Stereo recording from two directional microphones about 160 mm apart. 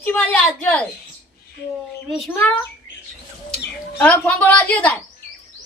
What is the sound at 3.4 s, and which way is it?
Speech, 5° left (ahead or behind).